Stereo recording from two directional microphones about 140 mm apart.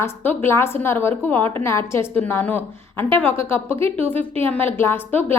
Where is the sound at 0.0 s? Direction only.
15° left (ahead or behind).